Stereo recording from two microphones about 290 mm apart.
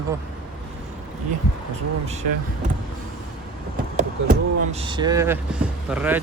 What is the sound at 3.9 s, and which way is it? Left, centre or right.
Speech, right.